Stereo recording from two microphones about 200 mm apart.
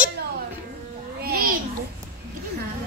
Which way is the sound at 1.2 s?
50° right (ahead or behind).